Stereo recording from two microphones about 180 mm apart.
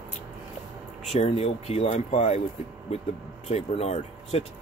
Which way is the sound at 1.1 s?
35° left (ahead or behind).